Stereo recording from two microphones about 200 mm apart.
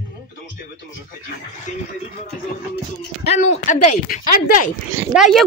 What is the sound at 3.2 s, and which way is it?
Speech, 35° left (ahead or behind).